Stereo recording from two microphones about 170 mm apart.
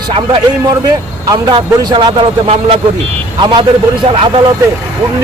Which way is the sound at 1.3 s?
20° right (ahead or behind).